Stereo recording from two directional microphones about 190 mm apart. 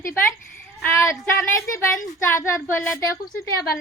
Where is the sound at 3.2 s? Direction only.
50° left (ahead or behind).